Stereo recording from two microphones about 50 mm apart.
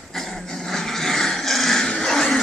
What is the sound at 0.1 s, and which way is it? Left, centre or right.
Dog, centre.